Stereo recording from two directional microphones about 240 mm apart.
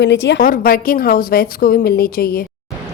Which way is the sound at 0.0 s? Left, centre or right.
Left.